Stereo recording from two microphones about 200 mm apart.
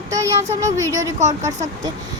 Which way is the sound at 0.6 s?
15° right (ahead or behind).